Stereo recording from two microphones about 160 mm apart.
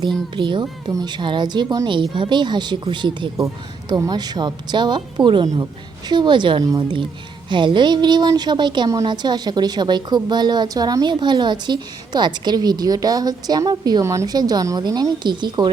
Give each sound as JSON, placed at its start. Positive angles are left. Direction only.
{"t": 0.3, "sound": "a woman's voice", "side_deg": -30}